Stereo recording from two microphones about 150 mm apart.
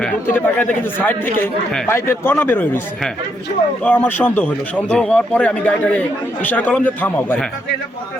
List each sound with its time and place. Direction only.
0.3 s a man's voice: 10° left (ahead or behind)
3.8 s a man's voice: 10° left (ahead or behind)